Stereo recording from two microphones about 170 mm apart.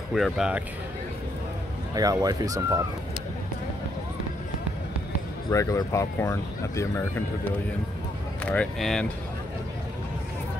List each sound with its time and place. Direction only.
0.1 s speech: centre (ahead or behind)
2.0 s speech: 20° right (ahead or behind)
5.5 s speech: 20° left (ahead or behind)
8.5 s speech: 5° left (ahead or behind)